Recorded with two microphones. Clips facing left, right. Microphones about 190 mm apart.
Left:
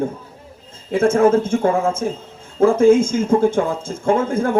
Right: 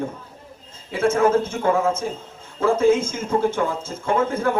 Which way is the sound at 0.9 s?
50° left (ahead or behind).